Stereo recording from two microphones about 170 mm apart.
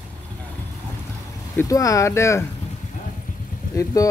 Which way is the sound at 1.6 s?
20° left (ahead or behind).